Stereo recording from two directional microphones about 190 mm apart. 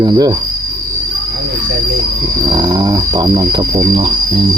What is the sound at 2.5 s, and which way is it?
Speech, 20° right (ahead or behind).